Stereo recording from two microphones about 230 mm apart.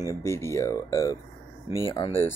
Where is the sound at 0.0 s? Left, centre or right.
Centre.